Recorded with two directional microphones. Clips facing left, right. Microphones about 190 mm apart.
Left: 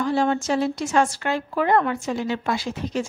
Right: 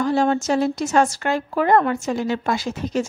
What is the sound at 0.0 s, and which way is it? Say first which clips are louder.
A woman's voice: right 2 dB; 45° right (ahead or behind).